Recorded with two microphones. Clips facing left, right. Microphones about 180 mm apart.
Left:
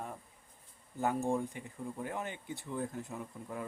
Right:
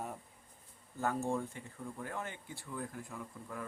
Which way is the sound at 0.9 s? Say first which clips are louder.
Left 2 dB; 15° left (ahead or behind).